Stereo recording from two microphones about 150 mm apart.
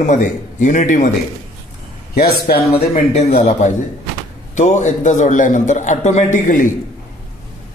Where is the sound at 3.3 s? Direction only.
50° left (ahead or behind).